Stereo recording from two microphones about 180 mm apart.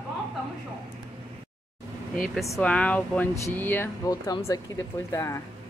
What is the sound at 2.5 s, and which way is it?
Speech, 5° left (ahead or behind).